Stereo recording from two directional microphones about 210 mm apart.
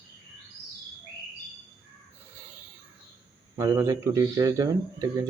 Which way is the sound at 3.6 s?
15° right (ahead or behind).